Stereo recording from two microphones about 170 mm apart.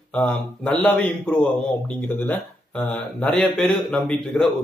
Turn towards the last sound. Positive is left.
turn(degrees=5)  # may be behind; listen again after turning